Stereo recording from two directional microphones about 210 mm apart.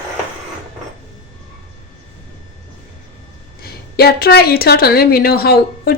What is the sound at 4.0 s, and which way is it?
A woman's voice, 45° left (ahead or behind).